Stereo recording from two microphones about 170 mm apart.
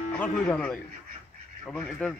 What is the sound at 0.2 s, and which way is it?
Speech, 10° left (ahead or behind).